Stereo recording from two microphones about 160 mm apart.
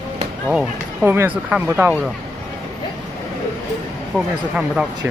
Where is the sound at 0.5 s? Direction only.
10° right (ahead or behind).